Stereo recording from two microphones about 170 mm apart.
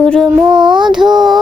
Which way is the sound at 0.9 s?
Centre (ahead or behind).